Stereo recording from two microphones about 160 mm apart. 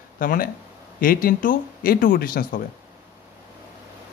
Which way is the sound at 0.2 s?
60° left (ahead or behind).